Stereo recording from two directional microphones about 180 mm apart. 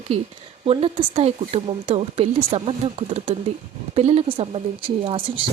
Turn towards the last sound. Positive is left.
turn(degrees=-30)  # may be behind; listen again after turning